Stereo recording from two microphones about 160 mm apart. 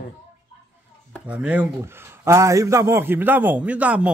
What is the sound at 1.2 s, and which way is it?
A man's voice, 10° right (ahead or behind).